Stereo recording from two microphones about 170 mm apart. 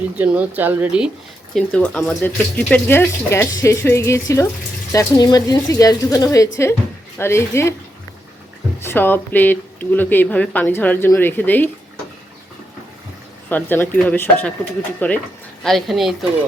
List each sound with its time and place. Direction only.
0.2 s speech: 10° right (ahead or behind)
1.5 s speech: 5° left (ahead or behind)
8.8 s speech: 15° left (ahead or behind)
13.5 s a woman's voice: 10° left (ahead or behind)